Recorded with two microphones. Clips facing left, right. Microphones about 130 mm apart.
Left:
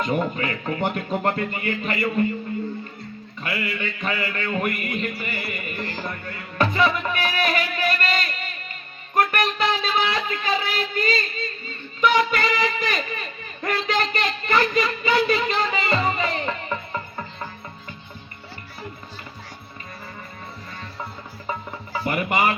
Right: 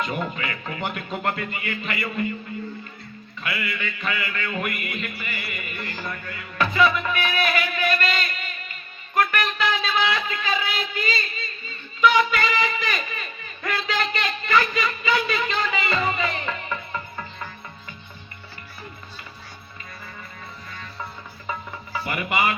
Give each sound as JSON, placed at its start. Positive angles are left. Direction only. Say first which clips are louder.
{"t": 0.2, "sound": "music", "louder": "left 4 dB", "side_deg": 35}
{"t": 3.4, "sound": "music", "louder": "left 2 dB", "side_deg": 40}
{"t": 9.1, "sound": "speech", "louder": "left 2 dB", "side_deg": 45}
{"t": 11.9, "sound": "singing", "louder": "right 1 dB", "side_deg": 45}
{"t": 13.6, "sound": "a sound", "louder": "left 3 dB", "side_deg": 45}
{"t": 22.0, "sound": "speech", "louder": "left 3 dB", "side_deg": 40}